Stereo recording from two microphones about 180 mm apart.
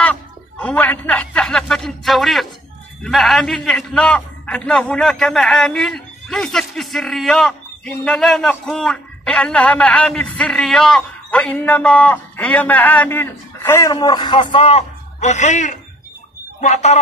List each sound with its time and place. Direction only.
0.0 s music: 10° left (ahead or behind)
3.0 s a man's voice: centre (ahead or behind); by 17.0 s 40° left (ahead or behind)